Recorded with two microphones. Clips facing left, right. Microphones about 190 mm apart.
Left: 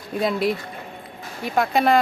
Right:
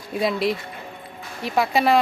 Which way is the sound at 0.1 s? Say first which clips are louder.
Even; centre (ahead or behind).